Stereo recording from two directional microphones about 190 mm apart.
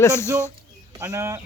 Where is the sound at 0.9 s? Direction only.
15° right (ahead or behind).